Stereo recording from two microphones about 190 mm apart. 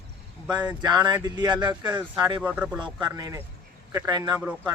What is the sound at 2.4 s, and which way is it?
Speech, 5° right (ahead or behind).